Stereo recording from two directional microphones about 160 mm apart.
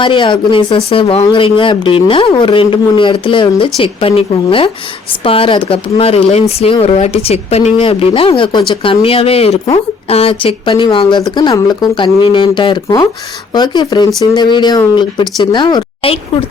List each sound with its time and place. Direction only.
0.0 s speech: 30° left (ahead or behind)